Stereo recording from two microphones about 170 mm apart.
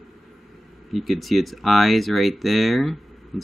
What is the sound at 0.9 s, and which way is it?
Speech, centre (ahead or behind).